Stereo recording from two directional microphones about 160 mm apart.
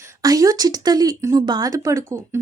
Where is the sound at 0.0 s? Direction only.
20° right (ahead or behind).